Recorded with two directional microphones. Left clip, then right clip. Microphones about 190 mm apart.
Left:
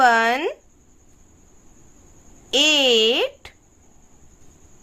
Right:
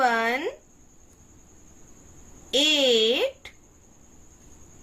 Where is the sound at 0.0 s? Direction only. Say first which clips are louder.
Left 7 dB; 40° left (ahead or behind).